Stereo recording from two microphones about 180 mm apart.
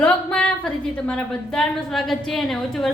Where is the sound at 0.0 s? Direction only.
5° left (ahead or behind).